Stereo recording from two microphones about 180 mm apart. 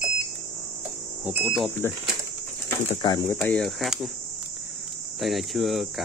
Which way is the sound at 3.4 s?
5° left (ahead or behind).